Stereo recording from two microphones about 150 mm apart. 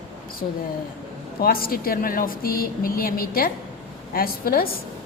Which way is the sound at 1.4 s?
80° left.